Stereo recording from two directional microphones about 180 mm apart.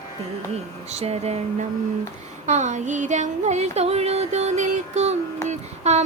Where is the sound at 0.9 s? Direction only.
35° right (ahead or behind).